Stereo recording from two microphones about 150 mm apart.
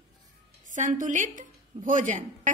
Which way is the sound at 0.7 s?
60° right (ahead or behind).